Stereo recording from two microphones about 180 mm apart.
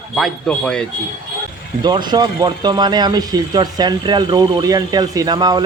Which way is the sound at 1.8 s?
25° right (ahead or behind).